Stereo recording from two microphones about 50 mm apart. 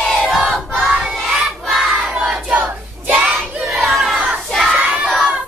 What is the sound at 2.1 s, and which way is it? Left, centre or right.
Child singing, centre.